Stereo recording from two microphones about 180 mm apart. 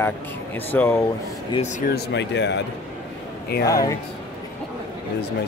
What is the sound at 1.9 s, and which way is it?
Speech, 80° left.